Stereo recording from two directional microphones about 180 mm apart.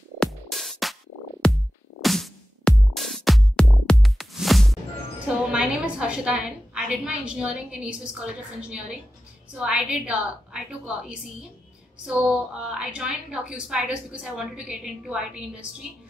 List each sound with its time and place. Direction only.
0.2 s music: centre (ahead or behind)
5.3 s a woman's voice: 5° right (ahead or behind)